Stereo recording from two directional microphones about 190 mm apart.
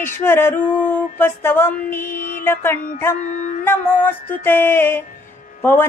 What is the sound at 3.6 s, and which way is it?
Music, 10° left (ahead or behind).